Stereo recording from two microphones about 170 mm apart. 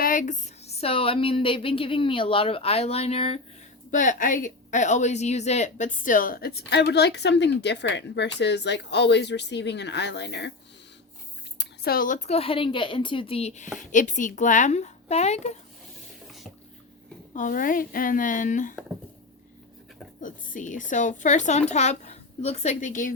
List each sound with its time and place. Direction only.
0.0 s speech: 50° left (ahead or behind)
3.9 s a woman's voice: 50° left (ahead or behind); by 10.5 s 90° left
11.5 s speech: 80° left; by 15.5 s 40° left (ahead or behind)
16.2 s a sound: centre (ahead or behind)
17.3 s a woman's voice: 50° left (ahead or behind)
20.2 s a woman's voice: 50° left (ahead or behind)